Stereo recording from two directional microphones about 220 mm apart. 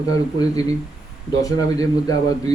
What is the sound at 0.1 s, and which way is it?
A man's voice, 15° left (ahead or behind).